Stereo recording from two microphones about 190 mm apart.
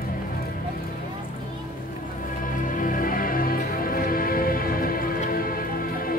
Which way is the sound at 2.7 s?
45° left (ahead or behind).